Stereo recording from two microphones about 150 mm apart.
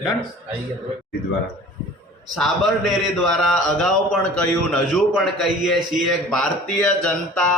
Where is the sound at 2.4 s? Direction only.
Centre (ahead or behind).